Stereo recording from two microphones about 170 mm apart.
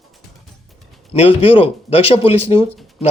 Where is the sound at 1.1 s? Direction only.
35° left (ahead or behind).